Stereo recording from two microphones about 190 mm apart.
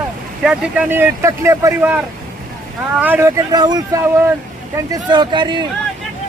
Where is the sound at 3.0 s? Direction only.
10° right (ahead or behind).